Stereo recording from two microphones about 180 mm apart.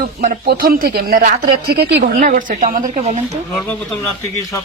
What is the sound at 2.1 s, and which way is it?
Speech, 50° right (ahead or behind).